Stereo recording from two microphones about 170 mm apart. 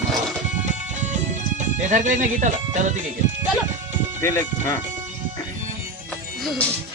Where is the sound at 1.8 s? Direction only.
45° right (ahead or behind).